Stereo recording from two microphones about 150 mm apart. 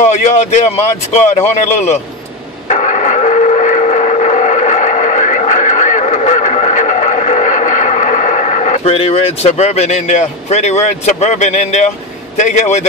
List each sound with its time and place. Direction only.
0.0 s speech: 50° left (ahead or behind)
2.7 s train: 50° left (ahead or behind)
12.4 s speech: 50° left (ahead or behind)